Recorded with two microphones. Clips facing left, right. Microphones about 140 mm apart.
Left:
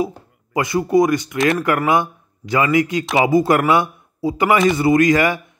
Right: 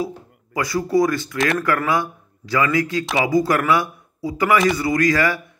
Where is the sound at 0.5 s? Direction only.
20° left (ahead or behind).